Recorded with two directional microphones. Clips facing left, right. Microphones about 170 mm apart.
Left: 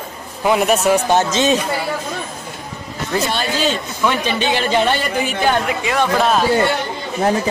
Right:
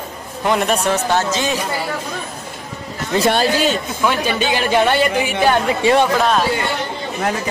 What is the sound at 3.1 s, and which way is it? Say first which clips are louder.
Speech: right 3 dB; 25° right (ahead or behind).